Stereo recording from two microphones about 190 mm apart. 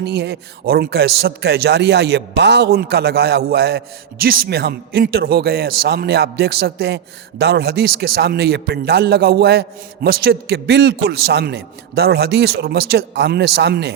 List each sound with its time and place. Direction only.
0.0 s a man's voice: 65° right (ahead or behind)